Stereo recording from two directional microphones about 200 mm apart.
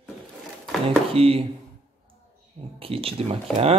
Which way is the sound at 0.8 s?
30° right (ahead or behind).